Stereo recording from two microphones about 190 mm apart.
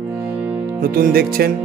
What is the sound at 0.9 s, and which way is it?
Speech, 50° right (ahead or behind).